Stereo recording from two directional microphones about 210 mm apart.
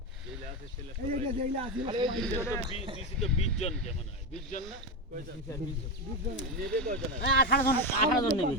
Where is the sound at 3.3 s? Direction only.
30° left (ahead or behind).